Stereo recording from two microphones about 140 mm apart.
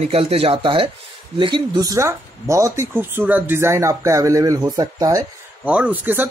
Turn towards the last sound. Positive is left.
turn(degrees=-15)  # may be behind; listen again after turning